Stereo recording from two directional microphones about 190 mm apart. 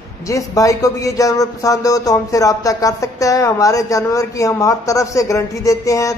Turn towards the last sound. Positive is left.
turn(degrees=15)  # may be behind; listen again after turning